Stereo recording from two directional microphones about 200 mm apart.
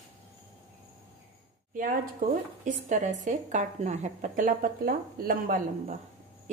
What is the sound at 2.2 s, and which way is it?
A woman's voice, 45° right (ahead or behind).